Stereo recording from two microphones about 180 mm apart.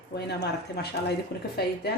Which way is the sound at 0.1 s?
65° left (ahead or behind).